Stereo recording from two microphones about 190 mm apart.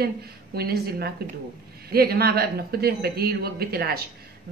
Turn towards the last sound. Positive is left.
turn(degrees=-55)  # may be behind; listen again after turning